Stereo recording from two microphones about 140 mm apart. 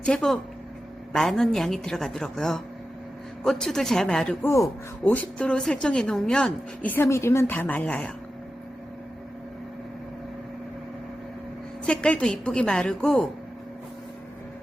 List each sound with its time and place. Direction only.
0.0 s a woman's voice: 5° left (ahead or behind)
4.4 s speech: 20° left (ahead or behind)
11.9 s a woman's voice: 5° left (ahead or behind)